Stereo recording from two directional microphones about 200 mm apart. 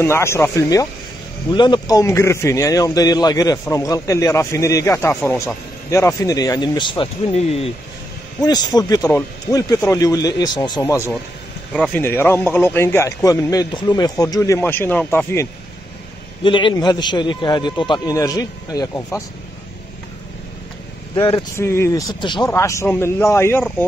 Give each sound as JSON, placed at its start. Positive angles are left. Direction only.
{"t": 0.0, "sound": "a man's voice", "side_deg": 15}
{"t": 8.4, "sound": "a man's voice", "side_deg": 20}
{"t": 16.4, "sound": "a man's voice", "side_deg": 25}
{"t": 21.1, "sound": "speech", "side_deg": 25}
{"t": 21.5, "sound": "a man's voice", "side_deg": 15}